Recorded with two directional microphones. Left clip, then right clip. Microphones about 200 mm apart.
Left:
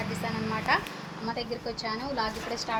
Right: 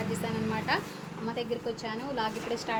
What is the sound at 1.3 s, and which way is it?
Speech, 10° left (ahead or behind).